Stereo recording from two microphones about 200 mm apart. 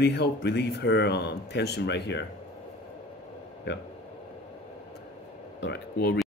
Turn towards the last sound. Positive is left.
turn(degrees=60)  # may be behind; listen again after turning